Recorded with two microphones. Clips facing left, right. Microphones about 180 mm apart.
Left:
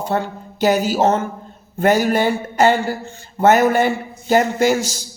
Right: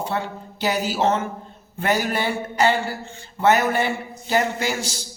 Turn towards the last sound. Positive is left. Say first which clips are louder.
# left 9 dB
turn(degrees=45)  # may be behind; listen again after turning